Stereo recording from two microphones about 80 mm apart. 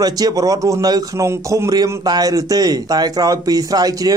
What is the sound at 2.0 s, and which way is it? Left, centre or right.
Speech, right.